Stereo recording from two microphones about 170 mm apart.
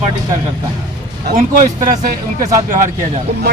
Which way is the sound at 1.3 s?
55° right (ahead or behind).